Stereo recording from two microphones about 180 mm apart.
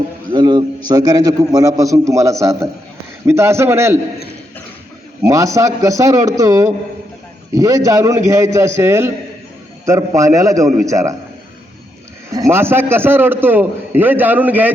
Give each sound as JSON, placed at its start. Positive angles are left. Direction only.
{"t": 0.3, "sound": "a man's voice", "side_deg": -25}
{"t": 5.2, "sound": "a man's voice", "side_deg": -15}
{"t": 10.2, "sound": "a man's voice", "side_deg": -20}
{"t": 12.3, "sound": "a man's voice", "side_deg": -15}